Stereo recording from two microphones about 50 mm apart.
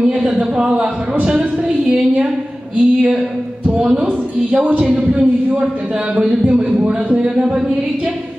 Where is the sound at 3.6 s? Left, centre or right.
Centre.